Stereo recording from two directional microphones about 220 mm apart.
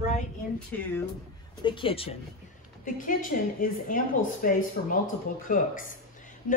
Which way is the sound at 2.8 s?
40° left (ahead or behind).